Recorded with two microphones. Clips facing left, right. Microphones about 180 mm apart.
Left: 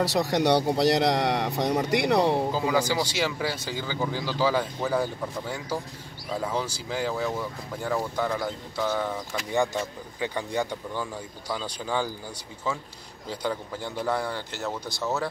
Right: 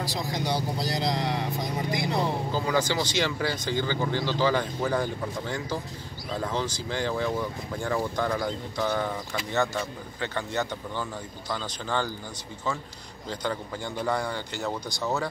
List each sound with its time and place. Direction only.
0.0 s speech: 70° left (ahead or behind)
2.5 s speech: 10° left (ahead or behind)
9.5 s speech: 10° left (ahead or behind)
13.3 s speech: 5° left (ahead or behind)